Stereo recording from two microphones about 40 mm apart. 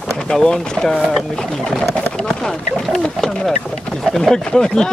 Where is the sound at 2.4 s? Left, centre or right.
Centre.